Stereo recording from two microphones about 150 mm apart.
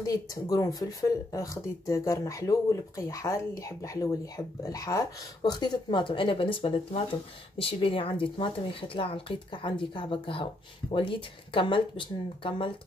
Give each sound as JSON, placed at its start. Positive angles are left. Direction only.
{"t": 0.0, "sound": "a woman's voice", "side_deg": 25}